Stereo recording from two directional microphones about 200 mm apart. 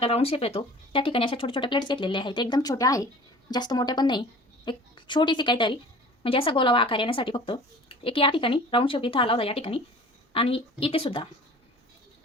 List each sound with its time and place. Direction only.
0.0 s a woman's voice: 30° left (ahead or behind)